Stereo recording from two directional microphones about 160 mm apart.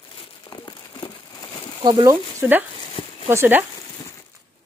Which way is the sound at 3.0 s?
30° left (ahead or behind).